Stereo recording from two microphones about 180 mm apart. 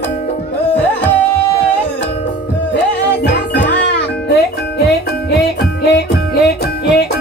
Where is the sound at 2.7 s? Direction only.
70° left (ahead or behind).